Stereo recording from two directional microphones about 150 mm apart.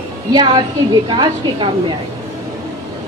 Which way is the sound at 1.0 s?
35° right (ahead or behind).